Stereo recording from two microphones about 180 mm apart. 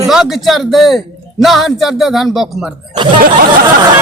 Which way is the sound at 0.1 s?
Centre (ahead or behind).